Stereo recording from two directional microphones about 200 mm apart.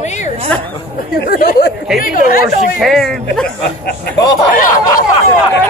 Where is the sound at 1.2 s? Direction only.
45° left (ahead or behind).